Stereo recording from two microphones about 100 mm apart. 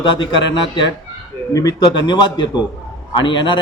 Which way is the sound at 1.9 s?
50° left (ahead or behind).